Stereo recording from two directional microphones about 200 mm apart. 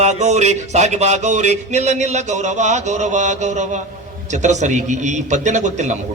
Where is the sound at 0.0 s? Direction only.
35° right (ahead or behind).